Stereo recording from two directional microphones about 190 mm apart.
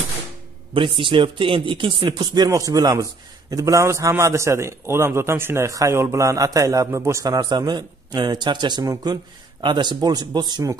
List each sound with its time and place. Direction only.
0.7 s speech: 25° right (ahead or behind)